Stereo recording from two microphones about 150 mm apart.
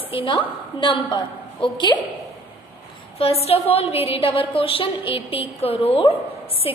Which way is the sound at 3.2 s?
40° left (ahead or behind).